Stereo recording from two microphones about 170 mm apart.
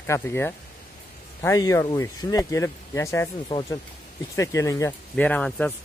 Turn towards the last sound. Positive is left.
turn(degrees=10)  # may be behind; listen again after turning